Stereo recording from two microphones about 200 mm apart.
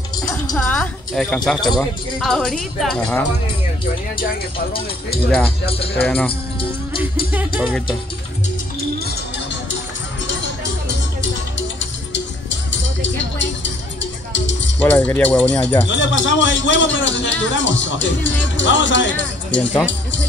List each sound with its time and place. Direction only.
0.6 s a sound: 5° left (ahead or behind)
1.8 s speech: centre (ahead or behind)
5.9 s speech: 10° left (ahead or behind)
7.3 s music: 10° right (ahead or behind)
11.8 s music: 65° left (ahead or behind)
14.3 s music: 65° left (ahead or behind)
14.8 s speech: 10° left (ahead or behind)
15.9 s a man's voice: 65° left (ahead or behind)
19.9 s music: 65° left (ahead or behind)